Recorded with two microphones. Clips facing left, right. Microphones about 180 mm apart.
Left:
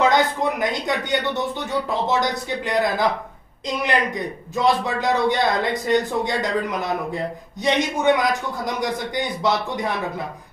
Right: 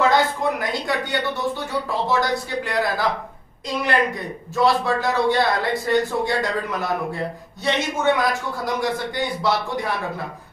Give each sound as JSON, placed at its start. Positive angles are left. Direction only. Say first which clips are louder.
{"t": 0.0, "sound": "a sound", "louder": "even", "side_deg": 20}
{"t": 2.0, "sound": "a man's voice", "louder": "even", "side_deg": 20}
{"t": 7.6, "sound": "a man's voice", "louder": "left 2 dB", "side_deg": 15}